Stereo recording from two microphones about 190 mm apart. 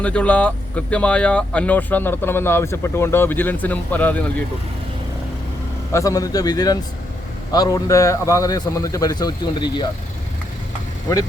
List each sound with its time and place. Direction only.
0.0 s speech: 5° left (ahead or behind)
5.9 s a man's voice: 15° left (ahead or behind)